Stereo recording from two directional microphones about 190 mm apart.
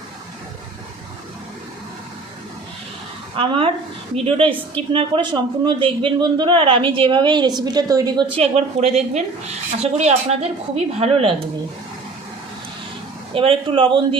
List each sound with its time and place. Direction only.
3.3 s a man's voice: 30° right (ahead or behind)
8.4 s a woman's voice: 35° right (ahead or behind)
13.3 s a man's voice: 30° right (ahead or behind)